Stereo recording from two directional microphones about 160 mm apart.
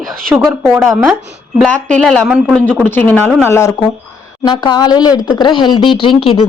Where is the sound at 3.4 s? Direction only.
15° left (ahead or behind).